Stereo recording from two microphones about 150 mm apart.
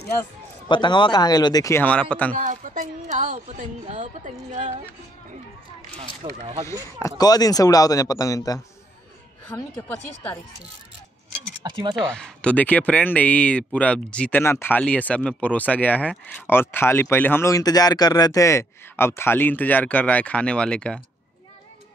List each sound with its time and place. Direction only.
0.7 s a man's voice: 30° left (ahead or behind)
1.8 s speech: 10° left (ahead or behind)
2.3 s speech: 55° right (ahead or behind)
6.2 s speech: 30° right (ahead or behind)
6.6 s a man's voice: 20° left (ahead or behind)
9.5 s speech: 15° left (ahead or behind)
11.6 s speech: 30° right (ahead or behind)
12.1 s speech: 5° left (ahead or behind)